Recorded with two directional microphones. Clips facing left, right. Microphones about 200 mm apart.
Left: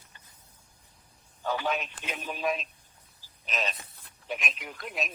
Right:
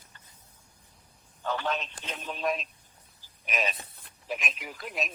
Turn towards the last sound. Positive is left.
turn(degrees=0)  # may be behind; listen again after turning